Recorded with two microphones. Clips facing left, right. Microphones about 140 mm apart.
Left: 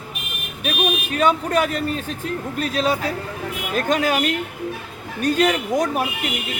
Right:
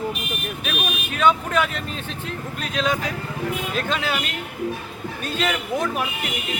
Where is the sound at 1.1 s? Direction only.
40° left (ahead or behind).